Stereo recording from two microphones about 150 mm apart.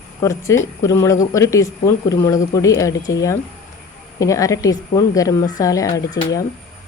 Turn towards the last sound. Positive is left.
turn(degrees=25)  # may be behind; listen again after turning